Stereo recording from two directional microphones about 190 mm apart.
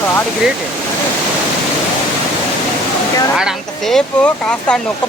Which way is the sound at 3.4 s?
Centre (ahead or behind).